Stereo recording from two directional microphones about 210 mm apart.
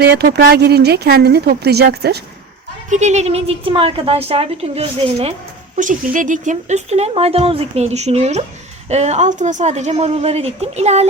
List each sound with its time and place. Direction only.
0.0 s a woman's voice: 50° right (ahead or behind)
2.9 s a woman's voice: 35° right (ahead or behind)